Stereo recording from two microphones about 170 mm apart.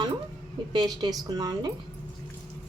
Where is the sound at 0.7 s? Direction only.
25° right (ahead or behind).